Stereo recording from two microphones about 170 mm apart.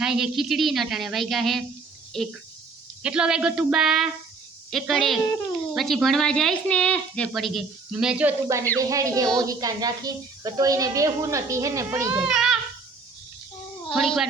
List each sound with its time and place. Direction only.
0.0 s speech: 5° right (ahead or behind)
3.0 s a woman's voice: 5° right (ahead or behind)
12.1 s a child's voice: 5° right (ahead or behind)
13.9 s speech: centre (ahead or behind)